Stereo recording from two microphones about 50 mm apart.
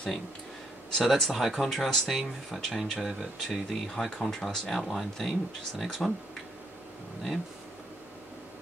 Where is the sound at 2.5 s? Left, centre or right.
Centre.